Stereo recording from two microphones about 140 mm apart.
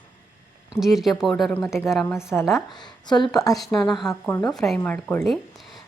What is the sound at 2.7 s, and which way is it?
Speech, 30° left (ahead or behind).